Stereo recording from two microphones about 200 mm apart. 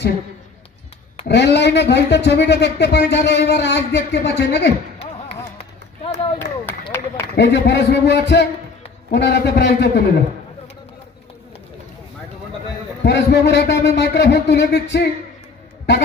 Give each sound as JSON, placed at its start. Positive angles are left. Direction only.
{"t": 1.2, "sound": "speech", "side_deg": 55}
{"t": 6.3, "sound": "a sound", "side_deg": 10}
{"t": 7.3, "sound": "speech", "side_deg": 60}
{"t": 13.0, "sound": "speech", "side_deg": 60}